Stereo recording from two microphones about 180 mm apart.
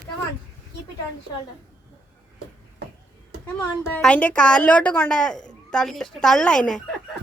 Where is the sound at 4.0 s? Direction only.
5° left (ahead or behind).